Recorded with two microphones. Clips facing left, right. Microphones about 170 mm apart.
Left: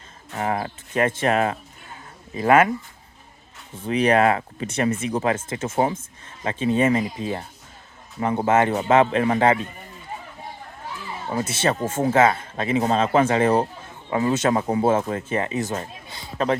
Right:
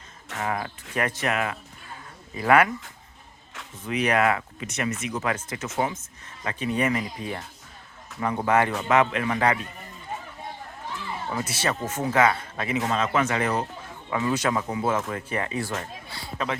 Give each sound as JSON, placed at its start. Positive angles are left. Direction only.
{"t": 0.3, "sound": "speech", "side_deg": 30}
{"t": 3.8, "sound": "speech", "side_deg": 30}
{"t": 11.3, "sound": "speech", "side_deg": 25}